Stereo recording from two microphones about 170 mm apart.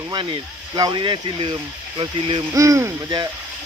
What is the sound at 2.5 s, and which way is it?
Speech, 20° right (ahead or behind).